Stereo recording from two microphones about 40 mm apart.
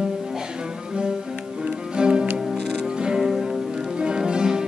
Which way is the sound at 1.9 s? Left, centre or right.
Right.